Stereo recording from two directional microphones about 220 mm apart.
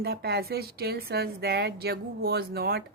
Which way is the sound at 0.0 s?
45° right (ahead or behind).